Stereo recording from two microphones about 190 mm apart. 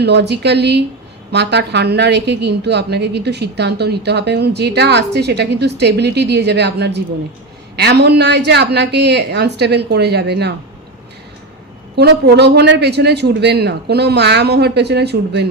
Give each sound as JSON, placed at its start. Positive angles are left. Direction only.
{"t": 0.0, "sound": "a woman's voice", "side_deg": -65}
{"t": 11.9, "sound": "a woman's voice", "side_deg": -60}